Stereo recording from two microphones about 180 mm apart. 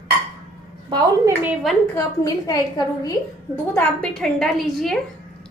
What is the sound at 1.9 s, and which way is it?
A woman's voice, 20° left (ahead or behind).